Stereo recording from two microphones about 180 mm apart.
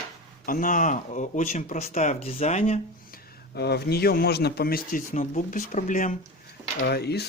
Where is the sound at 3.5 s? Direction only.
65° left (ahead or behind); by 6.1 s 45° left (ahead or behind).